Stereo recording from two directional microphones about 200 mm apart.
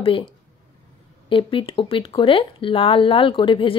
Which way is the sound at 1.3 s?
25° left (ahead or behind).